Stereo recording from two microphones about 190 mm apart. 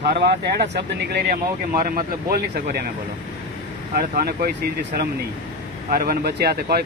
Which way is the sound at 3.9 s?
55° right (ahead or behind).